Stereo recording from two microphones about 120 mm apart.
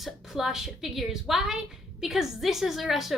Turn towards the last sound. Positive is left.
turn(degrees=0)  # may be behind; listen again after turning